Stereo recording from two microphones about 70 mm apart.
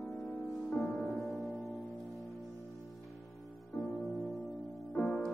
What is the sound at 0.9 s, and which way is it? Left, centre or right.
Music, centre.